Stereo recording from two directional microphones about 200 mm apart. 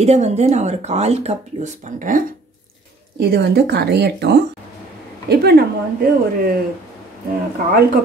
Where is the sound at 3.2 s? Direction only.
50° right (ahead or behind).